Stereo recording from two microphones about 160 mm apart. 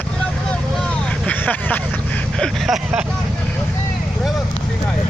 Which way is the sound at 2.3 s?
Centre (ahead or behind).